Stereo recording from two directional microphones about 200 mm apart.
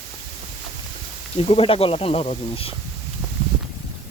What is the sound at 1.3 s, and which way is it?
Speech, 30° left (ahead or behind).